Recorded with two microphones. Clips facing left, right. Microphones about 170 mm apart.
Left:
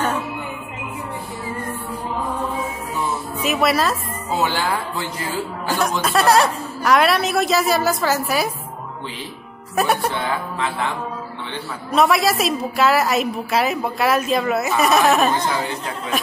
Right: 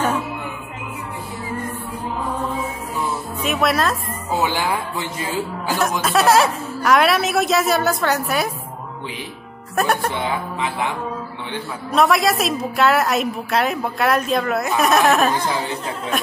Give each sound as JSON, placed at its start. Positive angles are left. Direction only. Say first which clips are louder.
{"t": 3.4, "sound": "a woman's voice", "louder": "left 1 dB", "side_deg": 0}
{"t": 4.3, "sound": "speech", "louder": "even", "side_deg": -15}
{"t": 5.7, "sound": "a woman's voice", "louder": "even", "side_deg": 0}
{"t": 9.8, "sound": "a woman's voice", "louder": "even", "side_deg": 0}
{"t": 10.1, "sound": "speech", "louder": "even", "side_deg": -20}
{"t": 11.9, "sound": "a woman's voice", "louder": "even", "side_deg": 0}